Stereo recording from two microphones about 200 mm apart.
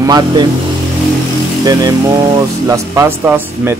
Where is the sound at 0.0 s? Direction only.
20° right (ahead or behind).